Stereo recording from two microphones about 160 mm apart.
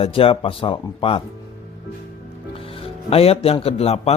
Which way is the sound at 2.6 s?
35° left (ahead or behind).